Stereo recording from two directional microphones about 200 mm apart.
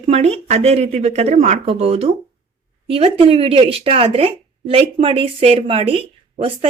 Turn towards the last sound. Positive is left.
turn(degrees=-30)  # may be behind; listen again after turning